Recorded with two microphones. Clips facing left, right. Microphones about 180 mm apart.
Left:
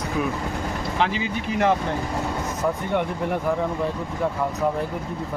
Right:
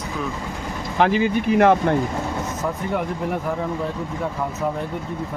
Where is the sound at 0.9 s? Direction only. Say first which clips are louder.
Right 8 dB; 50° right (ahead or behind).